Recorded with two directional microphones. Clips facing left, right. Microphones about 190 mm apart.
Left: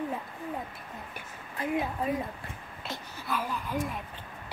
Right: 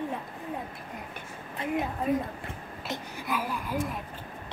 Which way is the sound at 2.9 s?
15° right (ahead or behind).